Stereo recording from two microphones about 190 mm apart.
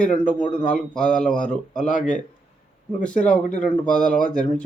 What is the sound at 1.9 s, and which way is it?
Speech, 40° left (ahead or behind).